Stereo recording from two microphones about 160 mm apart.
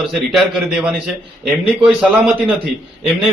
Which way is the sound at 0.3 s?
5° right (ahead or behind).